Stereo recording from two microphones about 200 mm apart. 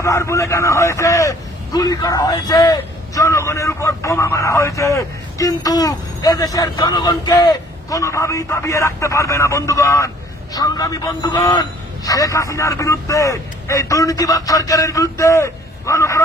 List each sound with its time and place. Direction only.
0.0 s a man's voice: 15° left (ahead or behind)